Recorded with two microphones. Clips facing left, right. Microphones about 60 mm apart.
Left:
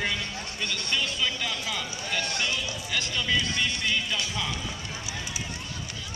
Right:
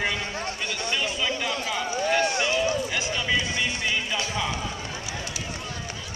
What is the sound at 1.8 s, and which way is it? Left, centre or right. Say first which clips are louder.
Run: right 8 dB; right.